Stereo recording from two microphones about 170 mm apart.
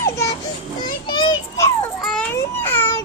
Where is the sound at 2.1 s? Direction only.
10° left (ahead or behind).